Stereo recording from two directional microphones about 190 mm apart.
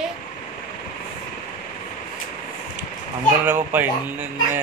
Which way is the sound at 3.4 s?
10° right (ahead or behind).